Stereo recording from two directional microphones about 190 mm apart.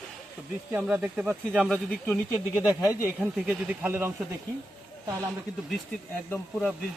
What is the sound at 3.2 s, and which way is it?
Speech, 5° right (ahead or behind).